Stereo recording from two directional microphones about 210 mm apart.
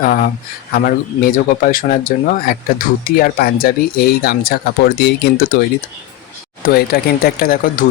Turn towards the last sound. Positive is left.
turn(degrees=45)  # may be behind; listen again after turning